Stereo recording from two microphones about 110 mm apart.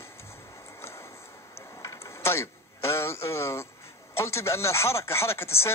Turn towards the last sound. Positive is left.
turn(degrees=25)  # may be behind; listen again after turning